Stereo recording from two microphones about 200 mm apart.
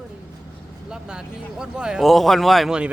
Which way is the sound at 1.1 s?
5° right (ahead or behind).